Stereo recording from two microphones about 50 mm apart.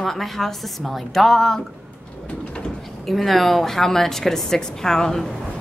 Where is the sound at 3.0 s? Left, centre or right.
Centre.